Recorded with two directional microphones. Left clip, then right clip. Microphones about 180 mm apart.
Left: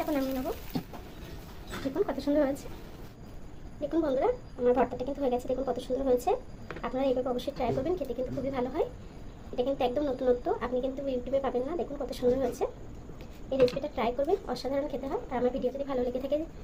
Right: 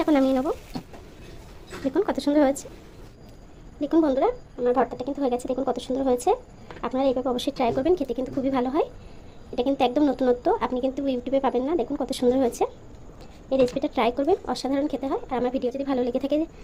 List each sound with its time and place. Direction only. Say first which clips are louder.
0.0 s speech: right 10 dB; 55° right (ahead or behind)
2.0 s a woman's voice: right 7 dB; 55° right (ahead or behind)
3.8 s a woman's voice: right 7 dB; 50° right (ahead or behind)